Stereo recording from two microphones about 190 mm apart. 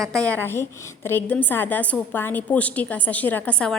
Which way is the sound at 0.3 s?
10° left (ahead or behind).